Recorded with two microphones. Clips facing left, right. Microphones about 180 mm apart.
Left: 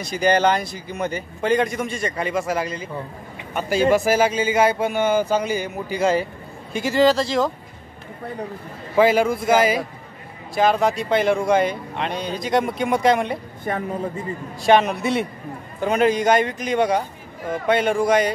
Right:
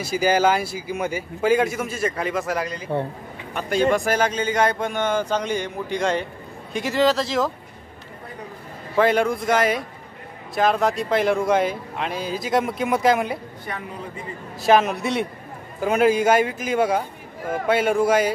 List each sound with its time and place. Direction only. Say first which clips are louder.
0.0 s a man's voice: left 1 dB; 5° right (ahead or behind)
8.9 s speech: left 2 dB; 5° left (ahead or behind)
13.7 s a man's voice: left 9 dB; 45° left (ahead or behind)
14.6 s speech: left 1 dB; centre (ahead or behind)